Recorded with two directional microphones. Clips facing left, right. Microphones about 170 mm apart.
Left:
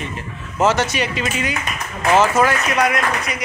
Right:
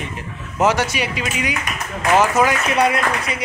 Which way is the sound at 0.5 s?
10° right (ahead or behind).